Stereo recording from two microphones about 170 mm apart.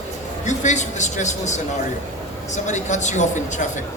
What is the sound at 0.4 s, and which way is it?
Speech, 45° left (ahead or behind).